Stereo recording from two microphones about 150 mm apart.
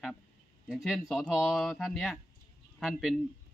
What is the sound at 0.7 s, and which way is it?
Speech, centre (ahead or behind).